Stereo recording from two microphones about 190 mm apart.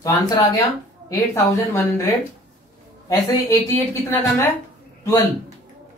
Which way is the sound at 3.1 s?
20° left (ahead or behind).